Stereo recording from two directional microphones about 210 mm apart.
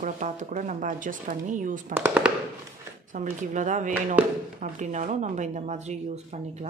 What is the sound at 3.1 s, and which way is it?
A woman's voice, 35° right (ahead or behind).